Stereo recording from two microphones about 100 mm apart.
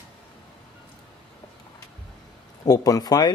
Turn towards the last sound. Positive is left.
turn(degrees=40)  # may be behind; listen again after turning